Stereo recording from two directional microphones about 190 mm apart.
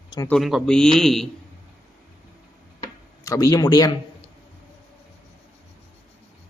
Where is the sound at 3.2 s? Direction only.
20° left (ahead or behind).